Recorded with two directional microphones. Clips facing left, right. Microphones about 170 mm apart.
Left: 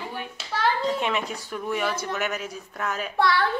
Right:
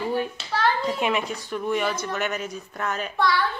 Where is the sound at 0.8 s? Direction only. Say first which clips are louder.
Right 1 dB; 5° right (ahead or behind).